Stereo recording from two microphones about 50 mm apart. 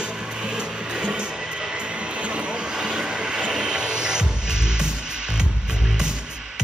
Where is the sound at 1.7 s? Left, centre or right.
Right.